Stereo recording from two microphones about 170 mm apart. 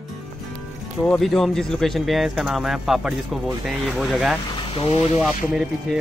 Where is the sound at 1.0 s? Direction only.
5° left (ahead or behind).